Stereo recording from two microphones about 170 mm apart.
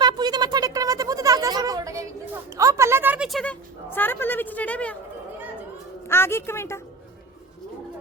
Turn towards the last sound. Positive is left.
turn(degrees=15)  # may be behind; listen again after turning